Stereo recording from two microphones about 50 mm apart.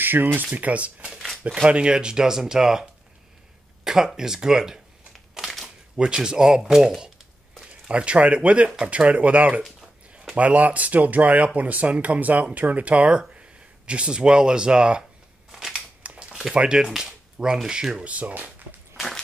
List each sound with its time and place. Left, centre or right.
0.0 s speech: right; by 4.7 s centre
5.4 s crumpling: centre
5.9 s speech: centre
15.5 s scissors: centre
16.0 s a sound: right
16.5 s speech: centre
18.0 s speech: right
18.9 s walk: centre